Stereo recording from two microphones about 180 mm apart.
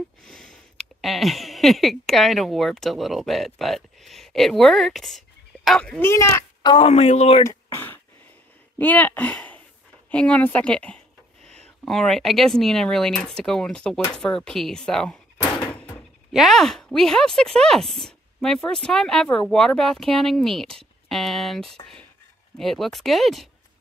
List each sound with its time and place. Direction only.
0.2 s speech: 5° left (ahead or behind); by 6.9 s 25° left (ahead or behind)
6.9 s speech: 35° left (ahead or behind)
7.4 s a sound: 10° left (ahead or behind)
8.7 s speech: 10° left (ahead or behind)
15.6 s door: 10° left (ahead or behind)
16.3 s speech: centre (ahead or behind)